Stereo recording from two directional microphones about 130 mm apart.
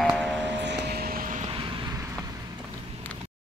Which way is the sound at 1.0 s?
90° right.